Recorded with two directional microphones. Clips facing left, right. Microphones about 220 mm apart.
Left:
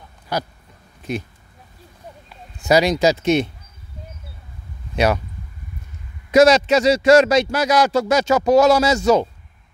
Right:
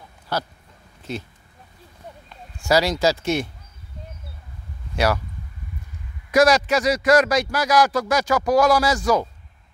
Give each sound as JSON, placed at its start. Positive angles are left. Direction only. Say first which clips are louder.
{"t": 0.3, "sound": "a sound", "louder": "left 2 dB", "side_deg": 15}
{"t": 2.6, "sound": "a man's voice", "louder": "left 3 dB", "side_deg": 20}
{"t": 4.9, "sound": "speech", "louder": "left 3 dB", "side_deg": 20}
{"t": 6.3, "sound": "a man's voice", "louder": "left 4 dB", "side_deg": 25}